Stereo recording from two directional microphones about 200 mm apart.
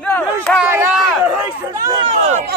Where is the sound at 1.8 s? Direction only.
20° right (ahead or behind).